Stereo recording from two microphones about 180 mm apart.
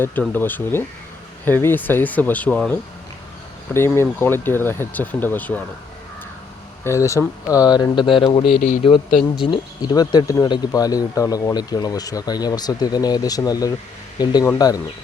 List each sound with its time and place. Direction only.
0.0 s speech: 10° left (ahead or behind)
3.8 s speech: 15° left (ahead or behind)
6.8 s speech: 15° left (ahead or behind)
9.1 s speech: 5° right (ahead or behind)
9.5 s speech: 20° left (ahead or behind)